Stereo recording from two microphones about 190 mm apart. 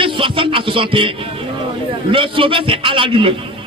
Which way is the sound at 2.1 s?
25° right (ahead or behind).